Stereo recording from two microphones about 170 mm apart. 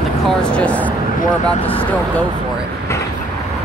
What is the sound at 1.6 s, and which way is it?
Speech, 30° left (ahead or behind).